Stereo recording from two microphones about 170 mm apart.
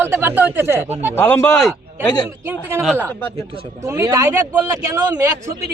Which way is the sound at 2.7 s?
15° right (ahead or behind).